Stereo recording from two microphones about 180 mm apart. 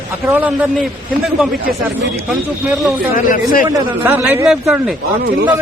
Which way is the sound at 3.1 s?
50° left (ahead or behind).